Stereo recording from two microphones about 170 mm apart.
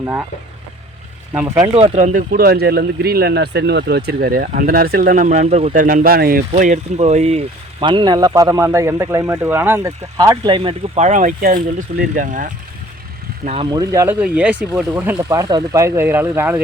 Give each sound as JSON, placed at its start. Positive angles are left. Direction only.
{"t": 0.0, "sound": "speech", "side_deg": -15}
{"t": 1.3, "sound": "speech", "side_deg": -15}
{"t": 1.7, "sound": "speech", "side_deg": -40}
{"t": 5.8, "sound": "speech", "side_deg": -55}
{"t": 6.5, "sound": "speech", "side_deg": -45}
{"t": 13.7, "sound": "speech", "side_deg": -20}
{"t": 14.2, "sound": "speech", "side_deg": -10}